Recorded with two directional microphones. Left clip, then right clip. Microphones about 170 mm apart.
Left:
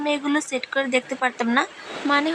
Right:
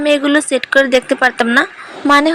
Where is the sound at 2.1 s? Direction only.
50° right (ahead or behind).